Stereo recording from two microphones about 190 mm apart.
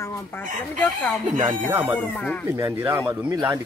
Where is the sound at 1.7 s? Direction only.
10° right (ahead or behind).